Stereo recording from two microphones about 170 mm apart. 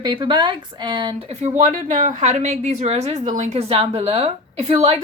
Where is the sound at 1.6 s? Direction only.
50° right (ahead or behind).